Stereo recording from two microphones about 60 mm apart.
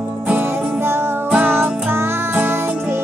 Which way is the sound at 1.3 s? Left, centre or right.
Right.